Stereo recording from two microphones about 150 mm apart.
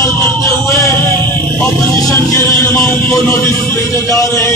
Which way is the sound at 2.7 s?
15° left (ahead or behind).